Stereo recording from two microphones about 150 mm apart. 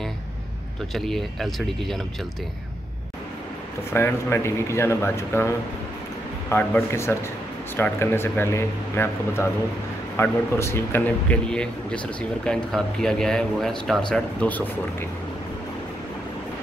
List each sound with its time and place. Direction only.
0.9 s speech: centre (ahead or behind)
3.9 s a man's voice: 15° left (ahead or behind)
6.5 s a man's voice: 15° left (ahead or behind)